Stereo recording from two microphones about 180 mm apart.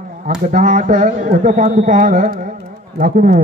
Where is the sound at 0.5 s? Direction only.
45° right (ahead or behind).